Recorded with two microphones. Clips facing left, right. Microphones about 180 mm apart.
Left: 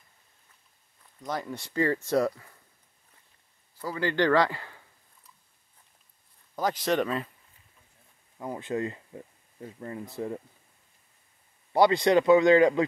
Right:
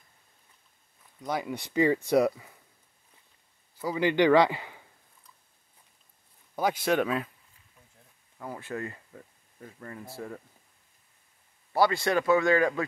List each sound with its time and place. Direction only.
1.2 s speech: 10° right (ahead or behind)
3.8 s speech: 15° right (ahead or behind)
6.5 s speech: 5° right (ahead or behind)
8.4 s speech: 20° left (ahead or behind)
11.7 s a man's voice: 20° left (ahead or behind)